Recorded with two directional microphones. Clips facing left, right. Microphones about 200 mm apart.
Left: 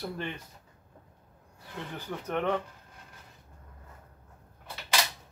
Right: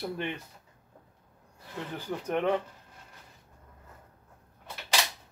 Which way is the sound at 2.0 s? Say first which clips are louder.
Right 2 dB; 10° right (ahead or behind).